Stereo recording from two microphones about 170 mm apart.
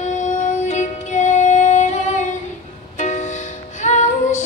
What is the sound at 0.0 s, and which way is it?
Music, 45° left (ahead or behind).